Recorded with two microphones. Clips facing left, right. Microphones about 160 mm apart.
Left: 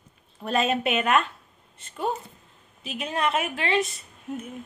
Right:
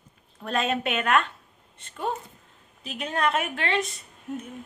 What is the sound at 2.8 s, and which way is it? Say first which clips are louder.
A woman's voice: even; 5° left (ahead or behind).